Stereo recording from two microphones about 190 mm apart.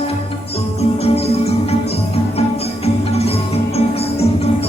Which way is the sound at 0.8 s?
30° left (ahead or behind).